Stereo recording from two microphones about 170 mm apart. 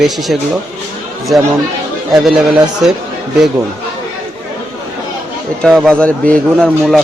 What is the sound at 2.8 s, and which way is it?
Speech, 5° right (ahead or behind).